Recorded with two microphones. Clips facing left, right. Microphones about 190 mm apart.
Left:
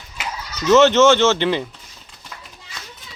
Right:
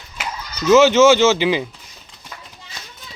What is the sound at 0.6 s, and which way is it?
Speech, 5° right (ahead or behind).